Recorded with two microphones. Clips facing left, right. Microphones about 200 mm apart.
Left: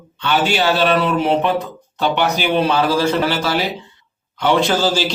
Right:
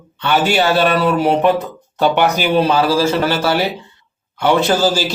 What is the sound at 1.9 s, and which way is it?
Speech, 45° right (ahead or behind).